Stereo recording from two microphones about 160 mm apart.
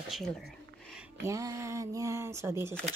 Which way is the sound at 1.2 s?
20° right (ahead or behind).